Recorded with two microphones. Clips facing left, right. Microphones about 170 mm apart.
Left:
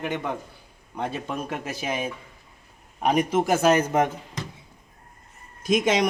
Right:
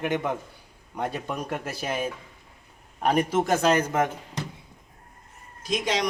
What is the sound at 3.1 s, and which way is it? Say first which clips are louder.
Speech: left 1 dB; 10° left (ahead or behind).